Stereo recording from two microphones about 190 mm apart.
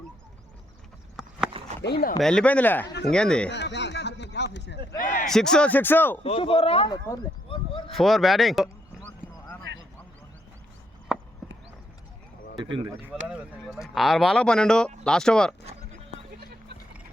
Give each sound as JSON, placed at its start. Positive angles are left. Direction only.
{"t": 1.2, "sound": "clip-clop", "side_deg": 0}
{"t": 1.8, "sound": "speech", "side_deg": 55}
{"t": 2.1, "sound": "a man's voice", "side_deg": 5}
{"t": 3.5, "sound": "speech", "side_deg": 65}
{"t": 5.2, "sound": "a man's voice", "side_deg": 5}
{"t": 6.2, "sound": "speech", "side_deg": 30}
{"t": 7.9, "sound": "a man's voice", "side_deg": 0}
{"t": 9.0, "sound": "a sound", "side_deg": 10}
{"t": 11.1, "sound": "horse", "side_deg": -5}
{"t": 12.5, "sound": "speech", "side_deg": -25}
{"t": 12.9, "sound": "a man's voice", "side_deg": -5}